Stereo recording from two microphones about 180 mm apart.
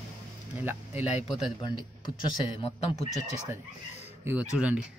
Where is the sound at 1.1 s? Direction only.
30° left (ahead or behind).